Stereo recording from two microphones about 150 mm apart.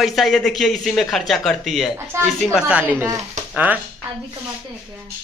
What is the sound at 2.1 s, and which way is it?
Speech, 15° right (ahead or behind).